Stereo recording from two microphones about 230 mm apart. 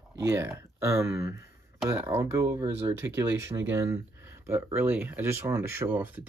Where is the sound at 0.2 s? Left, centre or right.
Centre.